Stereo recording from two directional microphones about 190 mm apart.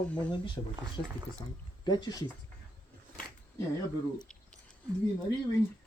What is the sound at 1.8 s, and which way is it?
Speech, 20° left (ahead or behind).